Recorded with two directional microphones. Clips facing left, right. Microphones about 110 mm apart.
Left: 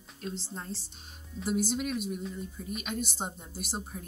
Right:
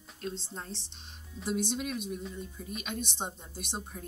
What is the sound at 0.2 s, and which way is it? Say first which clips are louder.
Speech: even; centre (ahead or behind).